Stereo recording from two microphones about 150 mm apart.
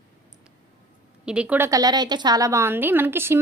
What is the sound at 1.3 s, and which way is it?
A woman's voice, 10° right (ahead or behind).